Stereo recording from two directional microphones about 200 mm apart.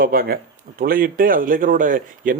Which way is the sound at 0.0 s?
45° right (ahead or behind).